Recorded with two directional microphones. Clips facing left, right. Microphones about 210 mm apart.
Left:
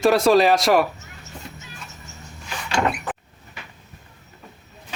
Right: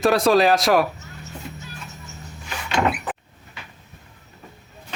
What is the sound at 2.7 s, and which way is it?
Door, centre (ahead or behind).